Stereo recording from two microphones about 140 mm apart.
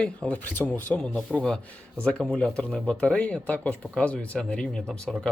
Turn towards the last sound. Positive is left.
turn(degrees=5)  # may be behind; listen again after turning